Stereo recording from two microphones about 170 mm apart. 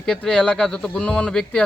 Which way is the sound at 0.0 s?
5° left (ahead or behind).